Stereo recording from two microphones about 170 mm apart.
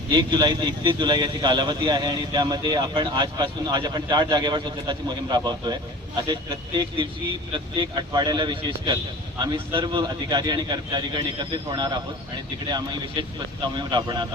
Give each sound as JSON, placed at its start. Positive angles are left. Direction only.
{"t": 0.1, "sound": "a man's voice", "side_deg": -25}
{"t": 13.2, "sound": "a man's voice", "side_deg": -30}